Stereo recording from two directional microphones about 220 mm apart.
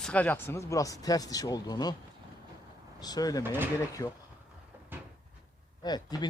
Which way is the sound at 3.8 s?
15° left (ahead or behind).